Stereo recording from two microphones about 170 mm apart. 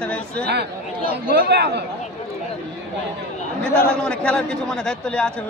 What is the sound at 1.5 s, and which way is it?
Speech, 80° right.